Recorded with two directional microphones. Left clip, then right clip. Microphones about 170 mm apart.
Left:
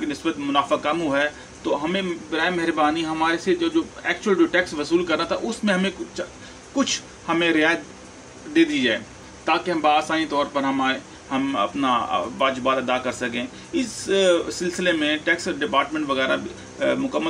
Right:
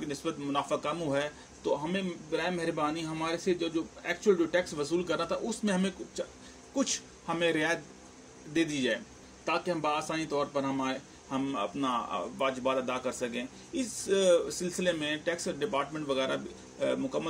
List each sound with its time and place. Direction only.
0.1 s a man's voice: 45° right (ahead or behind)